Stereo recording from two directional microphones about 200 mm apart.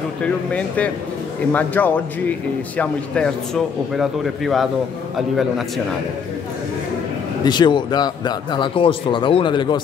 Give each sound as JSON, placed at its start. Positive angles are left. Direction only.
{"t": 0.2, "sound": "a man's voice", "side_deg": 5}
{"t": 7.4, "sound": "a man's voice", "side_deg": 20}